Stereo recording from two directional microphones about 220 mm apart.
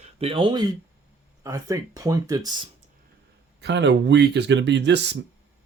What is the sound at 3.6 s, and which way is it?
Speech, 50° right (ahead or behind).